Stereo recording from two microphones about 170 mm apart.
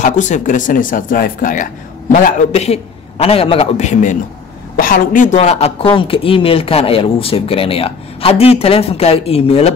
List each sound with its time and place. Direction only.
0.0 s speech: 45° left (ahead or behind)